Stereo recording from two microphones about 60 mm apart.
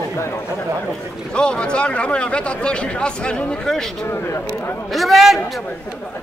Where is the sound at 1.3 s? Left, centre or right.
Centre.